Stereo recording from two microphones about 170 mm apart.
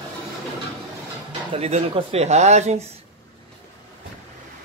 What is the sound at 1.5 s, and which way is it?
Speech, 35° right (ahead or behind).